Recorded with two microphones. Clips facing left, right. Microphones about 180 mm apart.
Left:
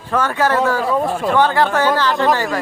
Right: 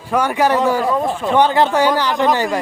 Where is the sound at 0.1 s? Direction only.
15° right (ahead or behind).